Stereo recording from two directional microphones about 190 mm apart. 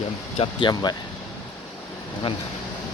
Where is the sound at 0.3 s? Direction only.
25° left (ahead or behind).